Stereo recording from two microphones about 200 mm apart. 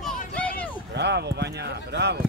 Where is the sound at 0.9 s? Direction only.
55° right (ahead or behind).